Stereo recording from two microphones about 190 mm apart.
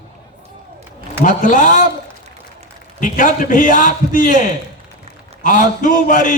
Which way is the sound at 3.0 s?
45° left (ahead or behind).